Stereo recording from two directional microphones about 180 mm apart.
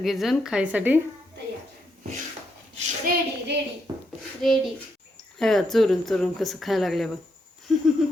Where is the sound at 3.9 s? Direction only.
20° right (ahead or behind).